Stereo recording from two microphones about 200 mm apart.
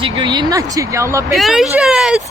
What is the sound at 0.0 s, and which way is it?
Speech, 25° right (ahead or behind).